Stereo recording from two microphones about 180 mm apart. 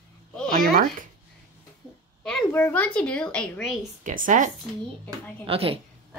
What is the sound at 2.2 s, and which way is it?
A woman's voice, 5° left (ahead or behind).